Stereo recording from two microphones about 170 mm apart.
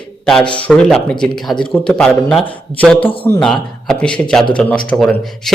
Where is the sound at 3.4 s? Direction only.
5° left (ahead or behind).